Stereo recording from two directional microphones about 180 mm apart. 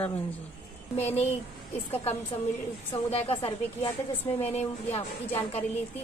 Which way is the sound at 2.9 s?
35° left (ahead or behind).